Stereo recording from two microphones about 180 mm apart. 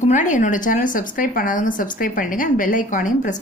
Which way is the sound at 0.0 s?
45° left (ahead or behind).